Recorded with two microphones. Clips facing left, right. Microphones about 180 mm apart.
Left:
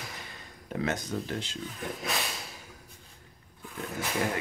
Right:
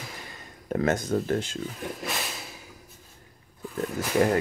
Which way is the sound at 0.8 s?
45° right (ahead or behind).